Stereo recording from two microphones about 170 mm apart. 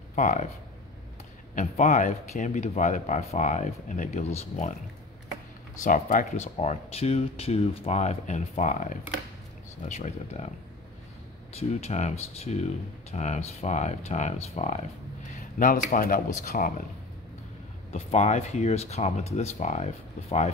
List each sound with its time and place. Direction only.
0.1 s speech: 45° left (ahead or behind)
1.5 s speech: 45° left (ahead or behind)
5.9 s speech: 50° left (ahead or behind)
11.5 s speech: 40° left (ahead or behind)
15.3 s speech: 55° left (ahead or behind)
17.9 s speech: 40° left (ahead or behind)